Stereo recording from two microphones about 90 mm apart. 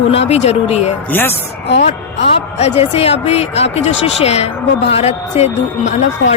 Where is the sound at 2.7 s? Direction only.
90° left.